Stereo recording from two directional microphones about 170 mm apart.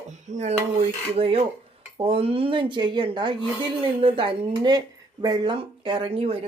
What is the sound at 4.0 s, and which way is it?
Speech, 30° right (ahead or behind).